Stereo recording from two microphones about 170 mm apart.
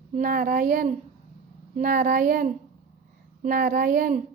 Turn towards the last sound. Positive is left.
turn(degrees=-55)  # may be behind; listen again after turning